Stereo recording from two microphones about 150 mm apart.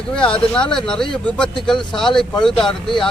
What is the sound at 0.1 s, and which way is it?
Speech, 5° left (ahead or behind).